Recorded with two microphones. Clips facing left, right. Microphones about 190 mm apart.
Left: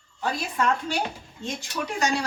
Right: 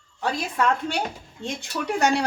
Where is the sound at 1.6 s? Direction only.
60° right (ahead or behind).